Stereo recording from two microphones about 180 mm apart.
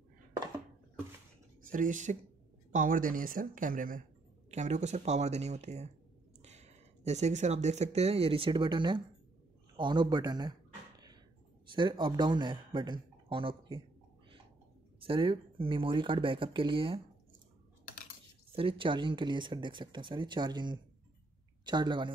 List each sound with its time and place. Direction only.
1.6 s speech: 50° right (ahead or behind); by 9.0 s 25° right (ahead or behind)
9.8 s a sound: 25° right (ahead or behind)
11.7 s speech: 25° right (ahead or behind)
15.0 s speech: 30° right (ahead or behind)
18.5 s speech: 30° right (ahead or behind)